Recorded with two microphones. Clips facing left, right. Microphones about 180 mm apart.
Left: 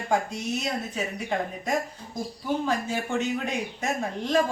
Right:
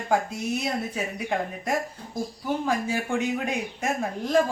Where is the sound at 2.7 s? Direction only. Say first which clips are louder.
Right 1 dB; 10° right (ahead or behind).